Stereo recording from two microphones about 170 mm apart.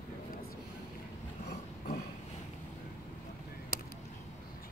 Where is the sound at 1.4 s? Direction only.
65° left (ahead or behind).